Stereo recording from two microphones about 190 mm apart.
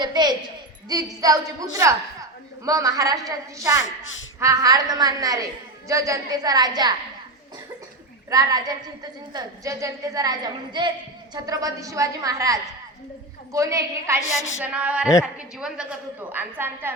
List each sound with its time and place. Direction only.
0.0 s a sound: 20° right (ahead or behind)
0.9 s a woman's voice: 20° right (ahead or behind)
8.3 s a woman's voice: 20° right (ahead or behind)